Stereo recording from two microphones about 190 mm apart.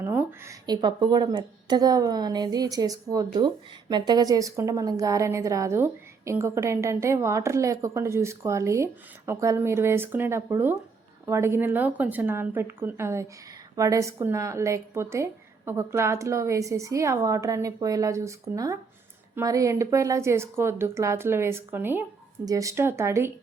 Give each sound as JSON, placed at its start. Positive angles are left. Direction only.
{"t": 0.0, "sound": "speech", "side_deg": -15}